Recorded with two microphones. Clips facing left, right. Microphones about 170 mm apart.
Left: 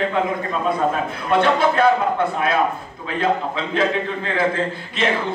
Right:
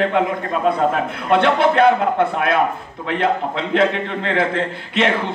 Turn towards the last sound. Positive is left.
turn(degrees=-65)  # may be behind; listen again after turning